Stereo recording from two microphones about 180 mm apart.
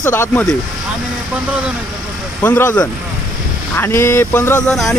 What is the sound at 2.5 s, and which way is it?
A man's voice, 10° left (ahead or behind).